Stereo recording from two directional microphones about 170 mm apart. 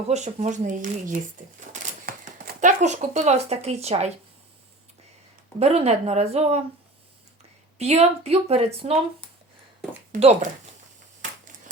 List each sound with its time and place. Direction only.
0.1 s speech: 40° right (ahead or behind)
5.5 s speech: 40° right (ahead or behind)
7.8 s speech: 40° right (ahead or behind)
10.2 s speech: 40° right (ahead or behind)